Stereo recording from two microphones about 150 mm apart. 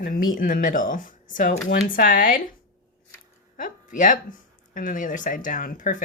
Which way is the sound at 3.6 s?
60° left (ahead or behind).